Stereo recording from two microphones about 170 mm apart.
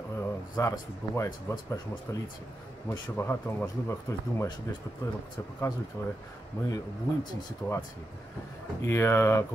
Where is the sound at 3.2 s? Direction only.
15° left (ahead or behind).